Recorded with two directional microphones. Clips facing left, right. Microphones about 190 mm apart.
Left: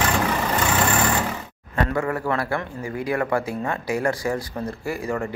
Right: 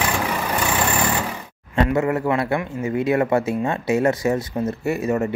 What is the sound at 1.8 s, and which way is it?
Speech, 20° right (ahead or behind).